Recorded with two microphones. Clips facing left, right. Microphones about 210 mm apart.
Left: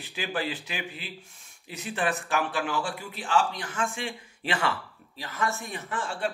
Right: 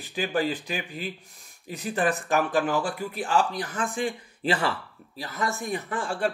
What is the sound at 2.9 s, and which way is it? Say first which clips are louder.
Speech: right 2 dB; 45° right (ahead or behind).